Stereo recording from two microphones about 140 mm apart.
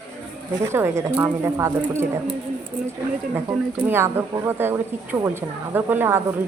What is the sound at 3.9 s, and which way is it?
A woman's voice, 15° right (ahead or behind).